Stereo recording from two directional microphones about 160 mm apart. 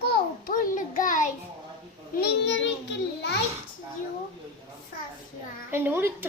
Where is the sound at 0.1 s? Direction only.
60° left (ahead or behind).